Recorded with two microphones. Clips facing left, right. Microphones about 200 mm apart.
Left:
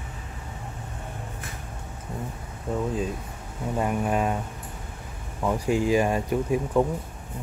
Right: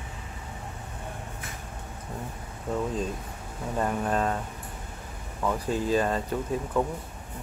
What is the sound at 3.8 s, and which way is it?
Speech, 10° left (ahead or behind).